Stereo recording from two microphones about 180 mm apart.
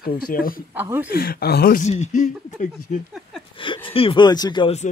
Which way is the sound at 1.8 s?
40° left (ahead or behind).